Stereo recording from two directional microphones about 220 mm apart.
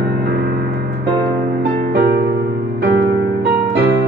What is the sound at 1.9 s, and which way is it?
Music, 50° right (ahead or behind).